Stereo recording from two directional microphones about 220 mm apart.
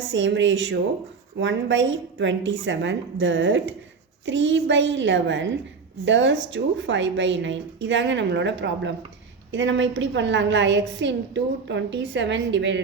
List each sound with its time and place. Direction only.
0.1 s a woman's voice: 55° right (ahead or behind)